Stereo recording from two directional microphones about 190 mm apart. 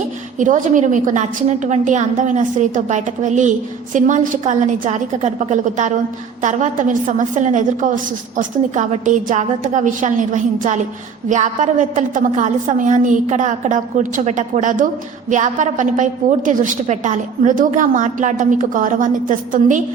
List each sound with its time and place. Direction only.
0.3 s a woman's voice: 40° right (ahead or behind)